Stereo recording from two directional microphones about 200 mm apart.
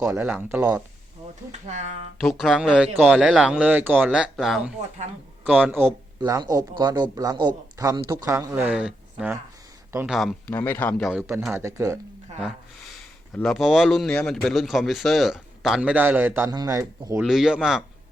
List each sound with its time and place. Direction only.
0.0 s speech: 15° right (ahead or behind)
1.6 s speech: 35° right (ahead or behind)
2.1 s speech: centre (ahead or behind)
10.2 s speech: 5° left (ahead or behind); by 11.9 s 15° right (ahead or behind)
13.3 s speech: 5° left (ahead or behind); by 17.2 s 15° right (ahead or behind)
17.2 s speech: 5° right (ahead or behind)